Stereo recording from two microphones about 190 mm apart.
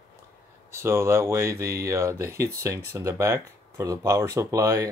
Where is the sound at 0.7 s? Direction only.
15° right (ahead or behind).